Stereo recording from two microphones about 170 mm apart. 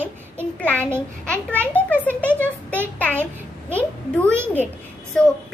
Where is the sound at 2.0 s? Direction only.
10° left (ahead or behind).